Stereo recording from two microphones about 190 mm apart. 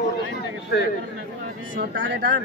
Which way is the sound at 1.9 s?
75° right (ahead or behind).